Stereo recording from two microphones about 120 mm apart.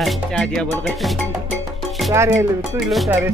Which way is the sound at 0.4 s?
5° left (ahead or behind).